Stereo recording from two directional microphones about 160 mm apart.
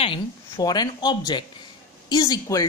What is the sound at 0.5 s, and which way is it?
Speech, 25° left (ahead or behind).